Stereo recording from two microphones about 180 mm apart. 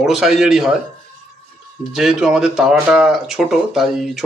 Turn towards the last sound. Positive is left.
turn(degrees=0)  # may be behind; listen again after turning